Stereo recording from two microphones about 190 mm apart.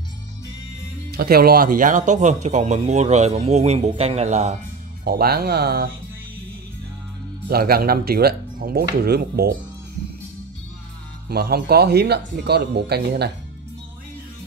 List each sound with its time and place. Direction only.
1.1 s speech: 55° right (ahead or behind); by 4.6 s 35° right (ahead or behind)
5.0 s speech: 55° right (ahead or behind)
7.4 s speech: 50° right (ahead or behind)
11.2 s speech: 55° right (ahead or behind)